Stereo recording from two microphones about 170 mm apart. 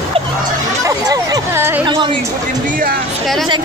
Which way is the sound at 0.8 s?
20° right (ahead or behind).